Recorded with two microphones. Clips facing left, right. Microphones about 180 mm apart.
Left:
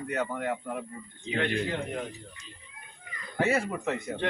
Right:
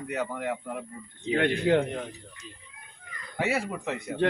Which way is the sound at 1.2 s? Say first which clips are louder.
Right 5 dB; 45° right (ahead or behind).